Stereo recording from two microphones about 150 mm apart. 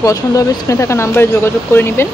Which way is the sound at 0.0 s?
20° left (ahead or behind).